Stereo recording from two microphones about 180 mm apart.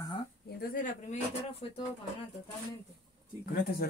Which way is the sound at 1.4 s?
30° left (ahead or behind).